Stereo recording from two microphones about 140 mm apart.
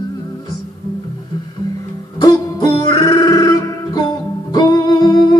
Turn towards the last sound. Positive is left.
turn(degrees=30)  # may be behind; listen again after turning